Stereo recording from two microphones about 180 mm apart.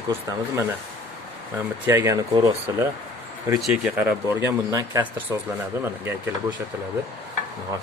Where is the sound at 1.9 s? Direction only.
15° right (ahead or behind).